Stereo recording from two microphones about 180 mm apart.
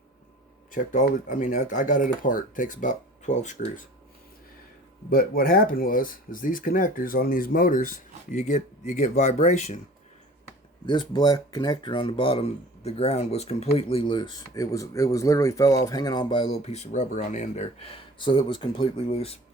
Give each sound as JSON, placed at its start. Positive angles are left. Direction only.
{"t": 0.7, "sound": "speech", "side_deg": 45}
{"t": 5.1, "sound": "speech", "side_deg": 55}
{"t": 10.8, "sound": "speech", "side_deg": 25}